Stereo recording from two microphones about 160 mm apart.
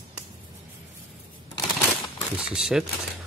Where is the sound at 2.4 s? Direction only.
5° right (ahead or behind).